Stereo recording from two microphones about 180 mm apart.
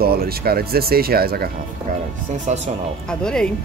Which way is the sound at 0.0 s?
55° right (ahead or behind).